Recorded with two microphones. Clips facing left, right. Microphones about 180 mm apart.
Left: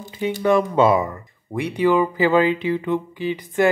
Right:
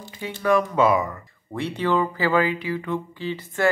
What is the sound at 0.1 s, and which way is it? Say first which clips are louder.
Speech: left 3 dB; 20° left (ahead or behind).